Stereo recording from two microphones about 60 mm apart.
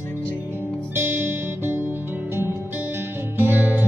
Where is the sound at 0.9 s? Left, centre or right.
Right.